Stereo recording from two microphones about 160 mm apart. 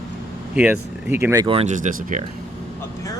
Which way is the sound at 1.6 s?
50° right (ahead or behind).